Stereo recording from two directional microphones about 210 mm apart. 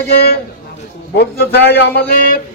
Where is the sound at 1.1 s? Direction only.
50° left (ahead or behind).